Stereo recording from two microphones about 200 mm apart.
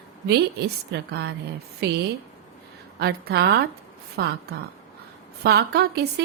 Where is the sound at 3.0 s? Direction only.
55° right (ahead or behind).